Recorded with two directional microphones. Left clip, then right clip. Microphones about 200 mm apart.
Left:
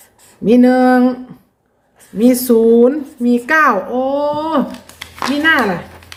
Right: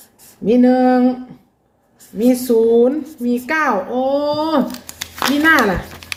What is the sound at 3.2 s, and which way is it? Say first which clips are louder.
A woman's voice: left 6 dB; 25° left (ahead or behind).